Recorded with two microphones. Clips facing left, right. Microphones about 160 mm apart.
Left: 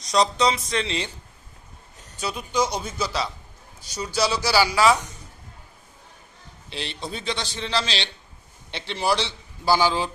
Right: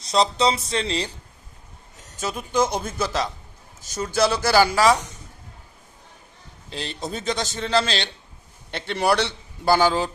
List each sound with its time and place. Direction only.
0.0 s speech: 30° right (ahead or behind)
2.1 s a man's voice: 45° right (ahead or behind)
6.7 s a man's voice: 40° right (ahead or behind)
8.7 s a man's voice: 55° right (ahead or behind)